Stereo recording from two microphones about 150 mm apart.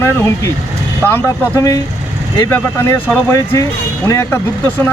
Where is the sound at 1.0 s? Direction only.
15° left (ahead or behind).